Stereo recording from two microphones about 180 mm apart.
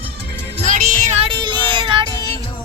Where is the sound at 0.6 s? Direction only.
45° right (ahead or behind); by 2.4 s 25° right (ahead or behind).